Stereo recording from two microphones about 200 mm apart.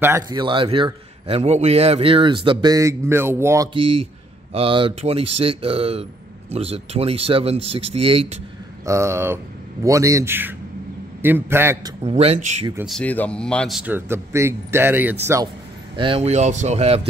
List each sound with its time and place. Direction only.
0.0 s a man's voice: 15° right (ahead or behind)
8.8 s speech: 15° right (ahead or behind)
12.0 s speech: 30° right (ahead or behind)
12.7 s speech: centre (ahead or behind)
16.0 s speech: 30° right (ahead or behind)